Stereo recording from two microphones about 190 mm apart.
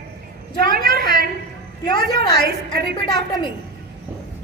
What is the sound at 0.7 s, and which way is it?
Speech, 50° right (ahead or behind).